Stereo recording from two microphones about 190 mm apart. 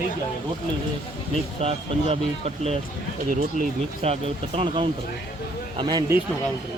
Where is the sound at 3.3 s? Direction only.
40° right (ahead or behind); by 6.2 s 15° right (ahead or behind).